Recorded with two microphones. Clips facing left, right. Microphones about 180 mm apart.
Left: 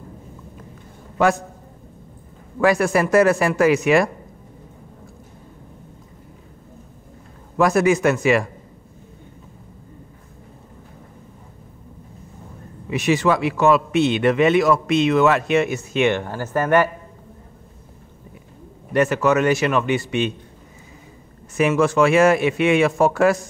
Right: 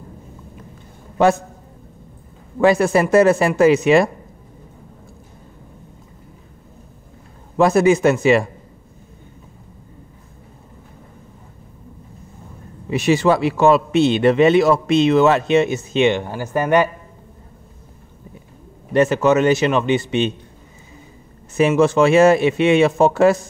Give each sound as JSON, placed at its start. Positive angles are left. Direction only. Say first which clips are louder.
{"t": 2.6, "sound": "a man's voice", "louder": "right 3 dB", "side_deg": -25}
{"t": 7.5, "sound": "a man's voice", "louder": "right 3 dB", "side_deg": -25}
{"t": 12.9, "sound": "a man's voice", "louder": "right 3 dB", "side_deg": -30}
{"t": 18.9, "sound": "a man's voice", "louder": "right 3 dB", "side_deg": -25}
{"t": 21.5, "sound": "a man's voice", "louder": "right 3 dB", "side_deg": -25}